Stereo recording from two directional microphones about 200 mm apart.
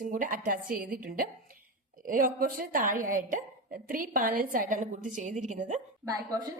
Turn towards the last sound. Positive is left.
turn(degrees=-20)  # may be behind; listen again after turning